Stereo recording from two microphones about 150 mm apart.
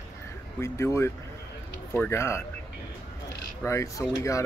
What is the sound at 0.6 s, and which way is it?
Speech, 20° left (ahead or behind).